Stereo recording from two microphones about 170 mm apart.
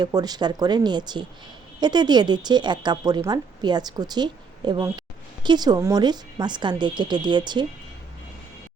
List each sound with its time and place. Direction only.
0.0 s speech: 25° right (ahead or behind)